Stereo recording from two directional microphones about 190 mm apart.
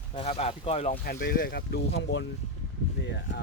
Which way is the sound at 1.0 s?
55° left (ahead or behind).